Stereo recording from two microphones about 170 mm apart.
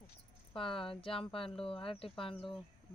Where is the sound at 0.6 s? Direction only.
30° left (ahead or behind).